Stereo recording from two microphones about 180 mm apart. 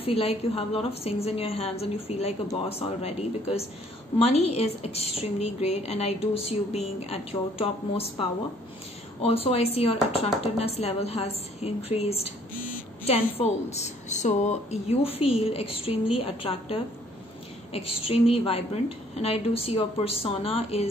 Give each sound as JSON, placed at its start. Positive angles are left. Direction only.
{"t": 0.0, "sound": "a woman's voice", "side_deg": 35}
{"t": 13.4, "sound": "a woman's voice", "side_deg": 35}